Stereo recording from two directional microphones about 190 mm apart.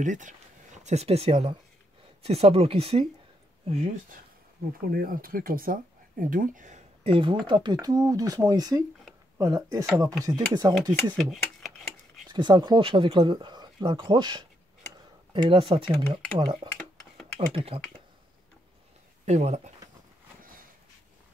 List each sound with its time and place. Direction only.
0.0 s speech: 40° right (ahead or behind)
4.9 s speech: 50° right (ahead or behind); by 10.7 s 20° right (ahead or behind)
11.1 s speech: centre (ahead or behind)
12.3 s speech: 25° right (ahead or behind)
17.6 s speech: 30° right (ahead or behind)
19.2 s speech: 35° right (ahead or behind)